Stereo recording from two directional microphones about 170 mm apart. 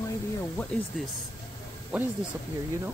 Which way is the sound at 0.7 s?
5° left (ahead or behind).